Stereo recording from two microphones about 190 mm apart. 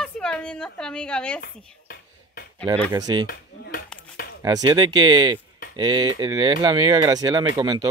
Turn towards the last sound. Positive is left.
turn(degrees=-20)  # may be behind; listen again after turning